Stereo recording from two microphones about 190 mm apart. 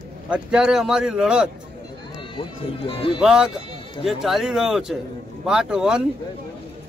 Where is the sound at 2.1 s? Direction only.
30° left (ahead or behind).